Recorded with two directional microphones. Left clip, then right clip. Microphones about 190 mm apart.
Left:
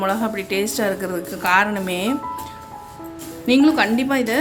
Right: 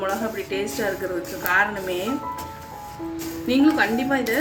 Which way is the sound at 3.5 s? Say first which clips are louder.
Left 3 dB; 55° left (ahead or behind).